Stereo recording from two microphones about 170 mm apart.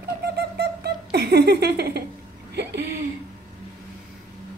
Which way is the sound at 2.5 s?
75° right (ahead or behind).